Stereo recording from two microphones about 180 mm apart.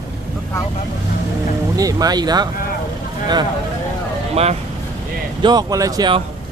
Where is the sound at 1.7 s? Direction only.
20° right (ahead or behind).